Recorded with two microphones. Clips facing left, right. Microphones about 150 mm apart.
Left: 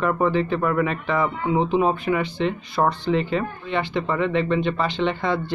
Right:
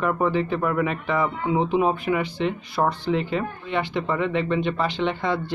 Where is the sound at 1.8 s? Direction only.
10° right (ahead or behind).